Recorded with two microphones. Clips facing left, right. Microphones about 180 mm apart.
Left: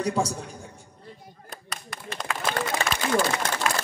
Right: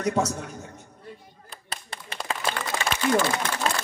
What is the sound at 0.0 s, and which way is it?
Speech, 30° left (ahead or behind).